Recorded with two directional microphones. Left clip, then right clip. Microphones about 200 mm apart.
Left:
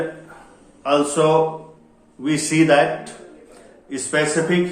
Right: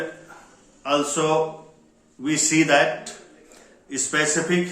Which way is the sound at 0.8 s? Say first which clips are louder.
Left 5 dB; 10° right (ahead or behind).